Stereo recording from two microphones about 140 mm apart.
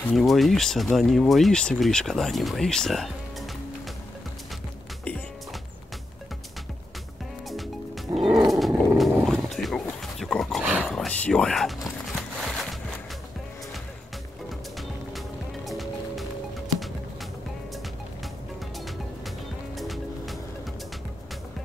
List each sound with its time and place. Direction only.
0.1 s speech: centre (ahead or behind)
7.4 s music: centre (ahead or behind)
8.3 s roar: 25° right (ahead or behind)
8.5 s roaring cats: centre (ahead or behind)
10.6 s dog: 10° right (ahead or behind)
10.9 s a sound: 5° left (ahead or behind)
14.8 s music: centre (ahead or behind)
18.9 s music: centre (ahead or behind)